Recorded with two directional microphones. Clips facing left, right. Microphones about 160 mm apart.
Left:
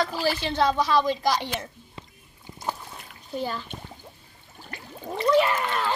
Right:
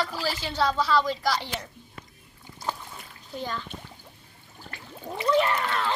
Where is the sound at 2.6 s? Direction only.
15° left (ahead or behind).